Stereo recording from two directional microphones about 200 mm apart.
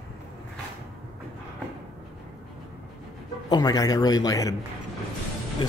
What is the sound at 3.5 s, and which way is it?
Speech, 20° left (ahead or behind).